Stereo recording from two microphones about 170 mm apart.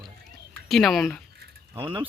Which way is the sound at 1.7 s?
30° right (ahead or behind).